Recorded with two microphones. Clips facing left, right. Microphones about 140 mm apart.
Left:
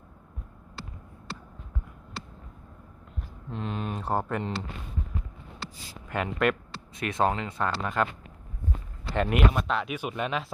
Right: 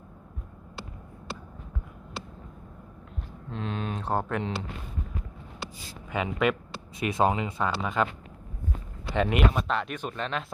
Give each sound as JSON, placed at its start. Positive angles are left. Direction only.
{"t": 3.5, "sound": "speech", "side_deg": 5}
{"t": 6.1, "sound": "speech", "side_deg": 0}
{"t": 9.1, "sound": "speech", "side_deg": 0}